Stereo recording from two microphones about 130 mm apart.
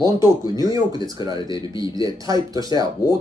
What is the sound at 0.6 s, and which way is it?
Speech, 30° right (ahead or behind).